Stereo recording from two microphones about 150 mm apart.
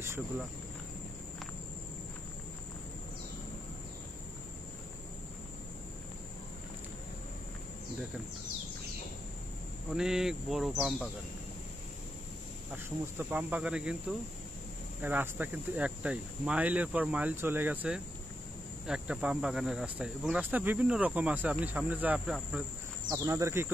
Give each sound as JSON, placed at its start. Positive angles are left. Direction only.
{"t": 9.9, "sound": "speech", "side_deg": -5}
{"t": 12.7, "sound": "speech", "side_deg": -15}
{"t": 15.0, "sound": "speech", "side_deg": -10}
{"t": 23.0, "sound": "speech", "side_deg": -25}